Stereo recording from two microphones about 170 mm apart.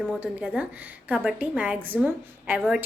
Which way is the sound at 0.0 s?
5° right (ahead or behind).